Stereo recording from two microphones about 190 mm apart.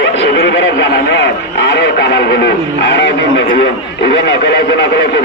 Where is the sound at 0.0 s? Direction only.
70° left (ahead or behind).